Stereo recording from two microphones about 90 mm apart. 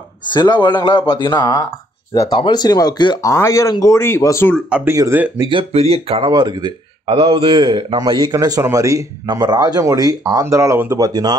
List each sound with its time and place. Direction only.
0.3 s speech: 60° left (ahead or behind)
3.2 s speech: 35° left (ahead or behind)
4.8 s speech: 35° right (ahead or behind)
5.5 s speech: 85° right
6.3 s speech: 50° right (ahead or behind)
7.1 s a man's voice: 90° right; by 8.3 s 70° right (ahead or behind)
8.3 s speech: 40° right (ahead or behind)
9.3 s speech: 50° right (ahead or behind)
10.9 s speech: 45° right (ahead or behind)